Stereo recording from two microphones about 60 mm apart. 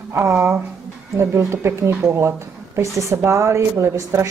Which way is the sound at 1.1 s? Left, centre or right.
Right.